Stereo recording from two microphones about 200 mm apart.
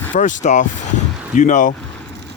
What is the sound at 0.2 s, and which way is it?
Speech, 40° left (ahead or behind).